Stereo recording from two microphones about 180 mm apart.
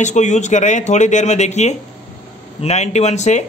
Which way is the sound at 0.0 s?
40° left (ahead or behind).